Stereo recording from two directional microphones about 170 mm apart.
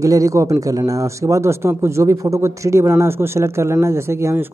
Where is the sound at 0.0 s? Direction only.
20° right (ahead or behind).